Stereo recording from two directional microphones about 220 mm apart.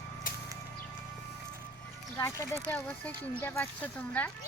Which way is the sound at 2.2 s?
15° left (ahead or behind).